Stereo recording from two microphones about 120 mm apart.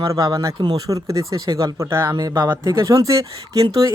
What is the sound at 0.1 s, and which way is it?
Speech, 30° right (ahead or behind).